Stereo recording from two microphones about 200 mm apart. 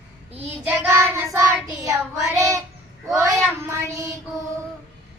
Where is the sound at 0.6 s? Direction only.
10° right (ahead or behind).